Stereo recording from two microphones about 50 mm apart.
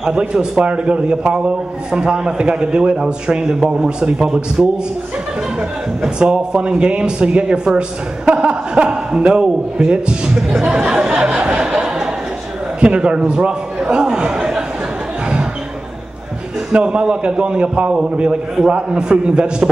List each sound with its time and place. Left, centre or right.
0.0 s a man's voice: centre
16.7 s a man's voice: centre